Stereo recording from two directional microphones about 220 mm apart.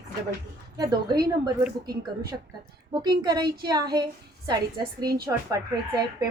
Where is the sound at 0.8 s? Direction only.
20° right (ahead or behind).